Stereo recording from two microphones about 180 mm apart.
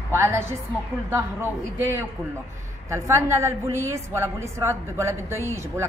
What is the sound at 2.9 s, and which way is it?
A woman's voice, 15° right (ahead or behind).